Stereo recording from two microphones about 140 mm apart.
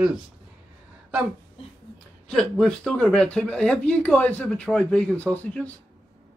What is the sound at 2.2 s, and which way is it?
Speech, 5° left (ahead or behind).